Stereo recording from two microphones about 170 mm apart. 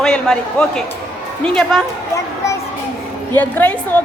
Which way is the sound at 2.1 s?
20° left (ahead or behind).